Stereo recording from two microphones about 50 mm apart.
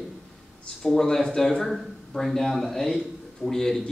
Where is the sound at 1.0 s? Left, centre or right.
Centre.